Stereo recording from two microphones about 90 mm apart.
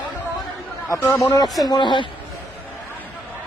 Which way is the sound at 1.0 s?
25° left (ahead or behind).